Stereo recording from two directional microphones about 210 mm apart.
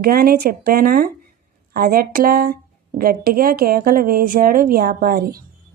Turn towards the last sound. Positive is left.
turn(degrees=-45)  # may be behind; listen again after turning